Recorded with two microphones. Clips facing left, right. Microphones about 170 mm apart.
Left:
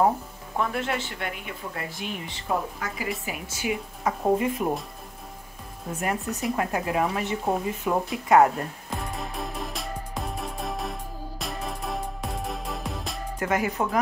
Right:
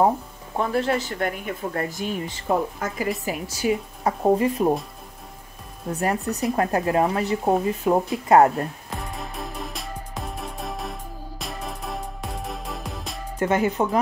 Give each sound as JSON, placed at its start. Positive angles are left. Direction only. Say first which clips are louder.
{"t": 0.6, "sound": "speech", "louder": "right 5 dB", "side_deg": -35}
{"t": 5.9, "sound": "speech", "louder": "right 4 dB", "side_deg": -35}
{"t": 8.9, "sound": "music", "louder": "even", "side_deg": 0}
{"t": 13.4, "sound": "speech", "louder": "right 5 dB", "side_deg": -30}